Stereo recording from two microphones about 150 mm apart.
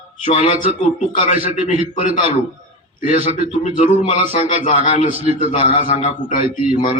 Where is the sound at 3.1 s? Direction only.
45° right (ahead or behind).